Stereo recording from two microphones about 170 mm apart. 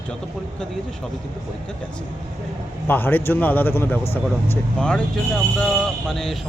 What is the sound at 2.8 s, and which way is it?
A man's voice, 10° left (ahead or behind).